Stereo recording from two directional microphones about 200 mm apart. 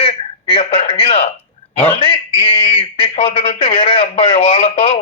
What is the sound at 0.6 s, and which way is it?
A man's voice, 30° left (ahead or behind).